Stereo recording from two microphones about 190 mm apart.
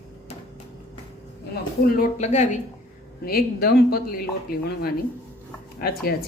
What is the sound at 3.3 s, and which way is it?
Speech, 55° left (ahead or behind).